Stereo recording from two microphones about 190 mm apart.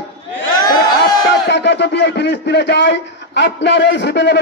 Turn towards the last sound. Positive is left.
turn(degrees=65)  # may be behind; listen again after turning